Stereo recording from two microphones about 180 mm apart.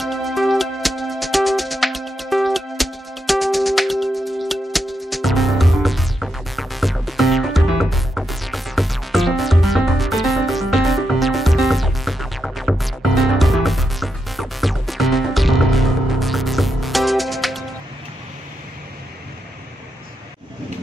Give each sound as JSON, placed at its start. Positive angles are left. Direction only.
{"t": 0.0, "sound": "music", "side_deg": 0}